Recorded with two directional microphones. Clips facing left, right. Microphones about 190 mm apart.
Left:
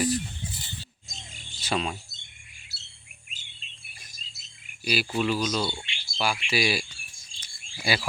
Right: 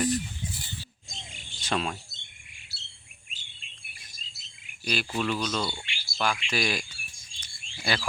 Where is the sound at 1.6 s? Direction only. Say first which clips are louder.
Left 1 dB; 5° left (ahead or behind).